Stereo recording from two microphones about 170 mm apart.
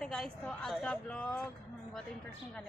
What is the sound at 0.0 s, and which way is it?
A woman's voice, 5° left (ahead or behind).